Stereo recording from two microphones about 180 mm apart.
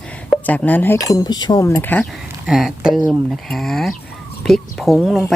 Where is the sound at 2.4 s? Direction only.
Centre (ahead or behind).